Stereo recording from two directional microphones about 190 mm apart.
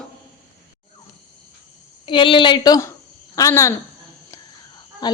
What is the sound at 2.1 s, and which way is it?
A woman's voice, 25° left (ahead or behind).